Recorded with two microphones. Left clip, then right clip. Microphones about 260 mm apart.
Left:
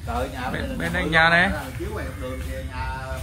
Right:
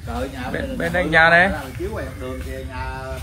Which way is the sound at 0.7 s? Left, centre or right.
Centre.